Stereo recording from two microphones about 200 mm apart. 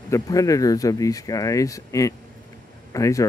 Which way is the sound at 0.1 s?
15° left (ahead or behind).